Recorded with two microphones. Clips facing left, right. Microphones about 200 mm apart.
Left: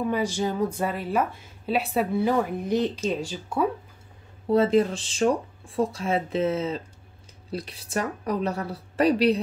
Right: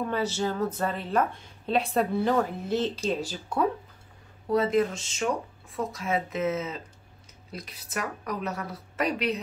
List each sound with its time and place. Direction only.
0.0 s a woman's voice: 10° left (ahead or behind)
4.5 s speech: 30° left (ahead or behind)